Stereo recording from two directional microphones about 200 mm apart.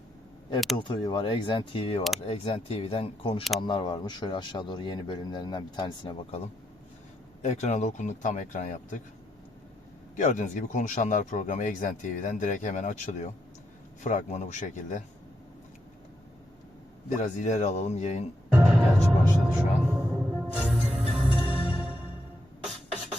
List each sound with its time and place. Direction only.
0.8 s speech: 25° left (ahead or behind)
7.4 s speech: 35° left (ahead or behind)
10.2 s speech: 40° left (ahead or behind)
17.2 s speech: 35° left (ahead or behind)
18.5 s music: 5° right (ahead or behind)
22.6 s beatboxing: centre (ahead or behind)